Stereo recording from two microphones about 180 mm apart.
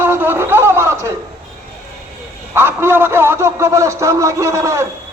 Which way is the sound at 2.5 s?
15° right (ahead or behind).